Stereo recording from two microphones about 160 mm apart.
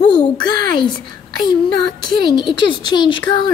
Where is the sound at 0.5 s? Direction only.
70° right (ahead or behind).